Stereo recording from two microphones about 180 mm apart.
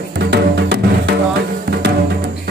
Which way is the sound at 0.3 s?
65° right (ahead or behind).